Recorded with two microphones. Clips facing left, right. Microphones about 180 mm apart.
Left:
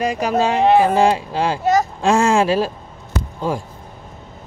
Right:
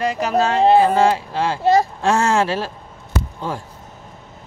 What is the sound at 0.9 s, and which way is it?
Speech, 15° left (ahead or behind).